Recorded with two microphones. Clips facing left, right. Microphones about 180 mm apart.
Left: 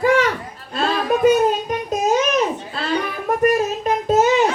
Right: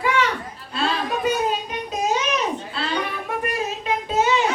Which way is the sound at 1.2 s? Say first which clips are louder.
Left 9 dB; 45° left (ahead or behind).